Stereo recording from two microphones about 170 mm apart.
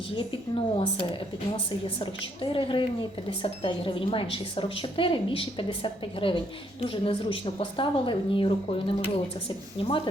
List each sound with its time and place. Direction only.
0.2 s a woman's voice: 30° left (ahead or behind)